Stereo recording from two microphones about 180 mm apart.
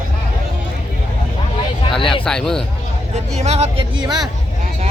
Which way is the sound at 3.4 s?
35° right (ahead or behind).